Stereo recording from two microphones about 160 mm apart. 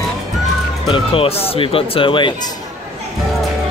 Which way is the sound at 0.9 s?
35° left (ahead or behind).